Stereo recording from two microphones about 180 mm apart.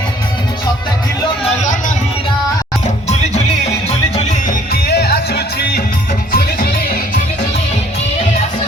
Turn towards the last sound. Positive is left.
turn(degrees=55)  # may be behind; listen again after turning